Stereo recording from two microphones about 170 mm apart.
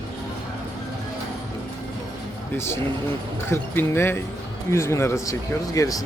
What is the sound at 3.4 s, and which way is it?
Speech, 15° left (ahead or behind).